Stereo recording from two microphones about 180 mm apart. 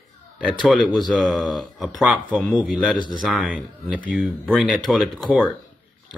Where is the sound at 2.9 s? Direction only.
25° right (ahead or behind).